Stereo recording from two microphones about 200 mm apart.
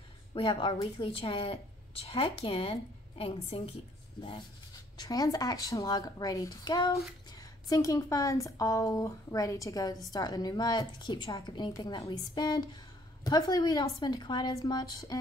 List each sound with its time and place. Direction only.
0.3 s a woman's voice: 25° left (ahead or behind)
4.9 s a woman's voice: 20° left (ahead or behind)